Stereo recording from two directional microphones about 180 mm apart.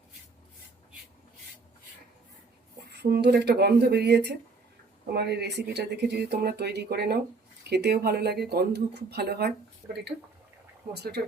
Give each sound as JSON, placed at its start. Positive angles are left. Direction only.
{"t": 2.9, "sound": "speech", "side_deg": -70}
{"t": 9.8, "sound": "speech", "side_deg": -10}
{"t": 10.9, "sound": "speech", "side_deg": -65}